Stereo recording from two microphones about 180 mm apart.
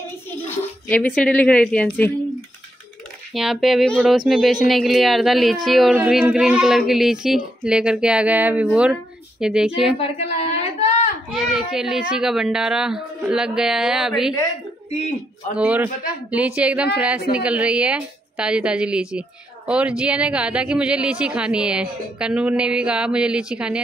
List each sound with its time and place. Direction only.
0.8 s a woman's voice: 10° left (ahead or behind)
3.3 s a child's voice: centre (ahead or behind)
10.8 s a sound: 35° left (ahead or behind)
11.3 s a child's voice: centre (ahead or behind)
15.5 s a woman's voice: 10° right (ahead or behind)